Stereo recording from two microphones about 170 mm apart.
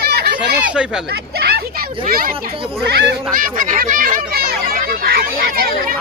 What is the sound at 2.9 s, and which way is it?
Speech, 80° right.